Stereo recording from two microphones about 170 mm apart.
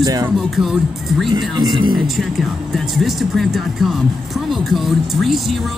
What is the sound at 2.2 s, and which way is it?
Speech, centre (ahead or behind).